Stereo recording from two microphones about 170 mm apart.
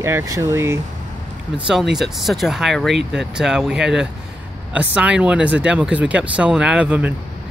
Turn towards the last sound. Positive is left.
turn(degrees=-10)  # may be behind; listen again after turning